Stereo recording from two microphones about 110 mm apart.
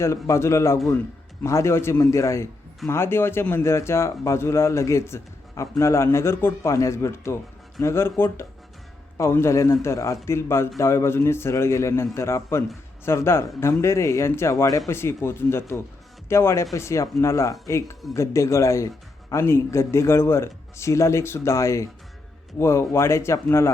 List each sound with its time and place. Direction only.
0.0 s a man's voice: 25° left (ahead or behind)